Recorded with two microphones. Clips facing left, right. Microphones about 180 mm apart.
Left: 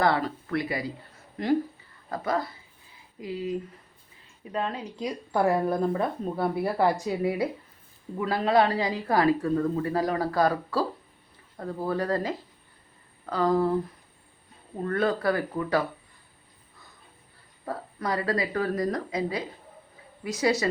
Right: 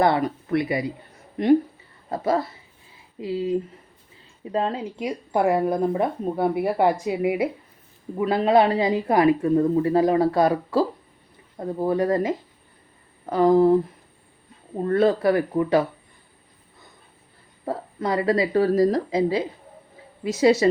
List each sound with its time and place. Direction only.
0.0 s a woman's voice: 20° right (ahead or behind)
14.8 s a woman's voice: 25° right (ahead or behind)
17.7 s a woman's voice: 25° right (ahead or behind)